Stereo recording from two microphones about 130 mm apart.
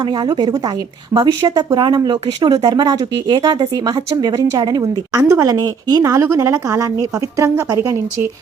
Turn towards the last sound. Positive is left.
turn(degrees=-25)  # may be behind; listen again after turning